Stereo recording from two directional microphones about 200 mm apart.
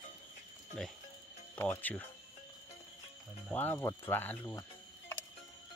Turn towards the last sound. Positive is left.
turn(degrees=15)  # may be behind; listen again after turning